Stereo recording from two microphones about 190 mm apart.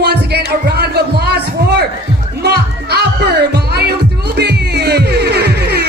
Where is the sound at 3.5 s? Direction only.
60° right (ahead or behind).